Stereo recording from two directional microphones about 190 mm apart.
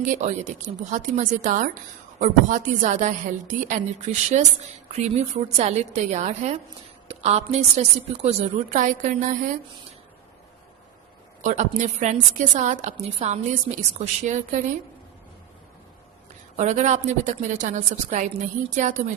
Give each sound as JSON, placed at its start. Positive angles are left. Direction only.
{"t": 0.0, "sound": "a woman's voice", "side_deg": -40}
{"t": 11.4, "sound": "a woman's voice", "side_deg": -40}
{"t": 16.6, "sound": "a woman's voice", "side_deg": -40}